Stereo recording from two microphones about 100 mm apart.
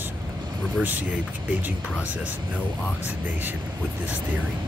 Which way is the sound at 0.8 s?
15° right (ahead or behind).